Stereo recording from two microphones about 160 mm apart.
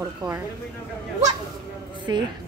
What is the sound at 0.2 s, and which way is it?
Speech, 25° right (ahead or behind).